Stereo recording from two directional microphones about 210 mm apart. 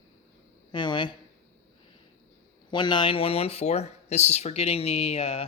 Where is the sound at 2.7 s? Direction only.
20° left (ahead or behind).